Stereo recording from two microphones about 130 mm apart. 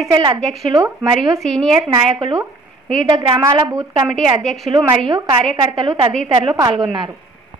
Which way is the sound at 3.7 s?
25° right (ahead or behind).